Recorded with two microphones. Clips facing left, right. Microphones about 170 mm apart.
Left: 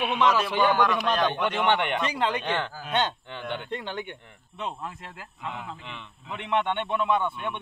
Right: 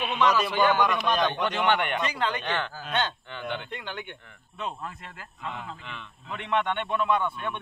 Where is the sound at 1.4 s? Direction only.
25° left (ahead or behind).